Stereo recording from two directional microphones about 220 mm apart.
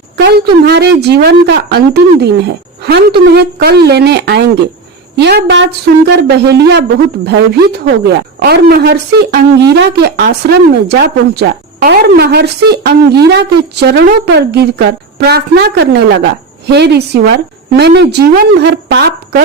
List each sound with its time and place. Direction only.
0.6 s a woman's voice: 50° right (ahead or behind)